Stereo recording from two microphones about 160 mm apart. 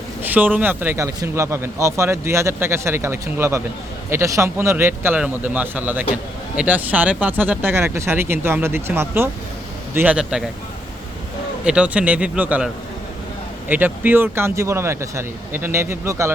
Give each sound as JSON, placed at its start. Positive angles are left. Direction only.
{"t": 0.2, "sound": "a man's voice", "side_deg": -10}
{"t": 11.6, "sound": "speech", "side_deg": -5}